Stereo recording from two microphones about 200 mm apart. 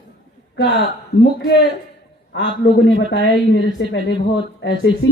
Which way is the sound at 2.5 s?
60° left (ahead or behind).